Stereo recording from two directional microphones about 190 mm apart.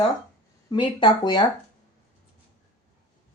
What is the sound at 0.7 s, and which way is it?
Speech, 25° left (ahead or behind).